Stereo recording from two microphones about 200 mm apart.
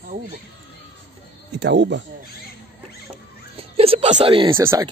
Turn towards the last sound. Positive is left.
turn(degrees=-10)  # may be behind; listen again after turning